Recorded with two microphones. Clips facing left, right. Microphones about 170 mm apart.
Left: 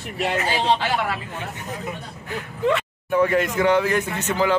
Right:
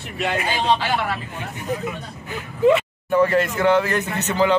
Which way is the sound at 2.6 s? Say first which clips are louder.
Right 6 dB; 5° right (ahead or behind).